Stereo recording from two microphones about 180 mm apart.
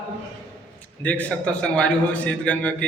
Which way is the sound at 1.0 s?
5° left (ahead or behind).